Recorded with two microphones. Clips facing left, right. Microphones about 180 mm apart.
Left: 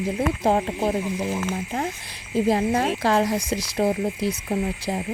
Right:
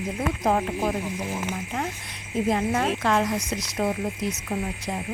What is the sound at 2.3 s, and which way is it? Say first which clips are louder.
Speech: left 3 dB; 35° left (ahead or behind).